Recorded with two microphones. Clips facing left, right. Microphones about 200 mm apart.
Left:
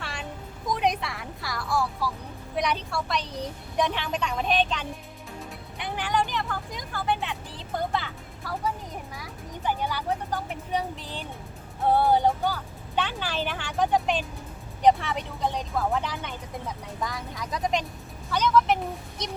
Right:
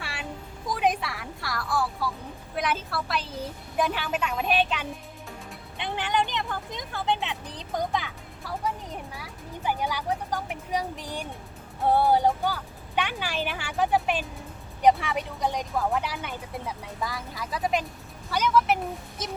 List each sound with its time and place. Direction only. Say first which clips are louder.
0.0 s music: even; 5° right (ahead or behind)
2.6 s a woman's voice: left 1 dB; centre (ahead or behind)
5.7 s a woman's voice: even; 20° right (ahead or behind); by 19.3 s 5° right (ahead or behind)